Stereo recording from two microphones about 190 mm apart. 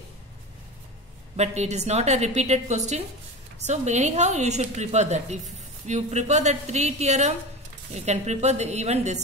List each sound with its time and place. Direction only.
1.3 s a woman's voice: 35° right (ahead or behind)